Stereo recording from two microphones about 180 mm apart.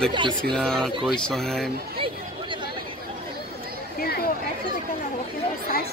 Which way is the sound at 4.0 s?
60° left (ahead or behind).